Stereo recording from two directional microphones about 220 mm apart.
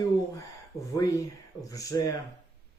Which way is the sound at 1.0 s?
15° left (ahead or behind).